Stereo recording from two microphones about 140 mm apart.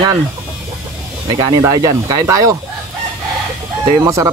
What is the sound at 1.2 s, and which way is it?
Speech, 25° right (ahead or behind).